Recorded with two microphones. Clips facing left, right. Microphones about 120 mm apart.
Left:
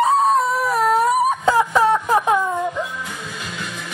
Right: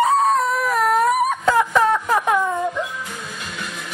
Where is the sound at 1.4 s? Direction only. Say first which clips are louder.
Left 1 dB; 10° left (ahead or behind).